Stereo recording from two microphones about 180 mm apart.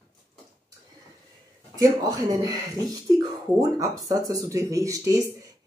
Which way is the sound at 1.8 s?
20° right (ahead or behind).